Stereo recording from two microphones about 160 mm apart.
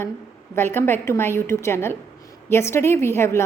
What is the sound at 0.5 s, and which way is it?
A woman's voice, 15° left (ahead or behind).